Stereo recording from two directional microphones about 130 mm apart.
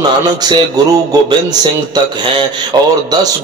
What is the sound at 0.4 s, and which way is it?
Speech, 30° right (ahead or behind).